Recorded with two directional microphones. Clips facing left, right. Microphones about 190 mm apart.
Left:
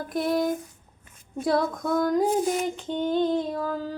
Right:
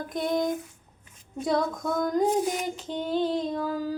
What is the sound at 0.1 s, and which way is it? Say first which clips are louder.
Music: left 2 dB; 5° left (ahead or behind).